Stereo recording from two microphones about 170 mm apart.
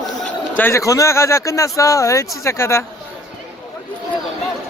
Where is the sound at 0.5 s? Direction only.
15° left (ahead or behind).